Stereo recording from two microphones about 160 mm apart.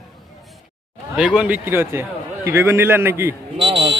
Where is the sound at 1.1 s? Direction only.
5° right (ahead or behind).